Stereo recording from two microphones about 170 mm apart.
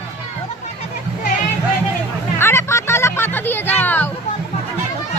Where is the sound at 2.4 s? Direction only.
15° left (ahead or behind).